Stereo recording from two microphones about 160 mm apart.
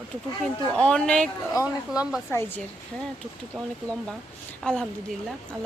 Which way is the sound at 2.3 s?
15° left (ahead or behind).